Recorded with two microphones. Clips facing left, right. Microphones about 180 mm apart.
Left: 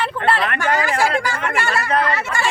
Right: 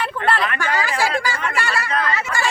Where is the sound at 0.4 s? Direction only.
55° left (ahead or behind).